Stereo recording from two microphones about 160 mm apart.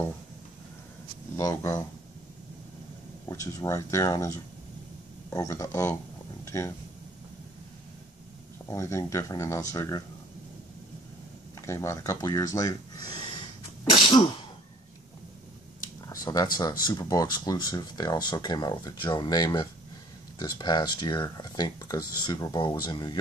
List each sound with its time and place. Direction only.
1.3 s speech: 20° left (ahead or behind)
3.3 s speech: 20° left (ahead or behind)
6.4 s a sound: 20° left (ahead or behind)
8.6 s speech: 20° left (ahead or behind)
11.6 s speech: 15° left (ahead or behind)
16.1 s a sound: 25° left (ahead or behind)
16.5 s speech: 25° left (ahead or behind)